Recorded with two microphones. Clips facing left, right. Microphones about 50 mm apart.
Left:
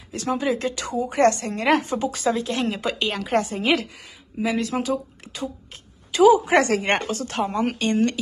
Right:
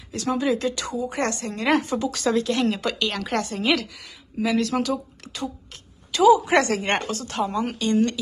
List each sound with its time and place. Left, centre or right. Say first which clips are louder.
0.1 s speech: even; left
2.0 s speech: left 1 dB; left
2.2 s a woman's voice: right 3 dB; centre
4.9 s a sound: left 2 dB; left
6.4 s speech: left 2 dB; left